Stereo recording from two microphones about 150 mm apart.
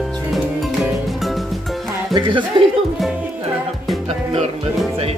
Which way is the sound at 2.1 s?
30° right (ahead or behind).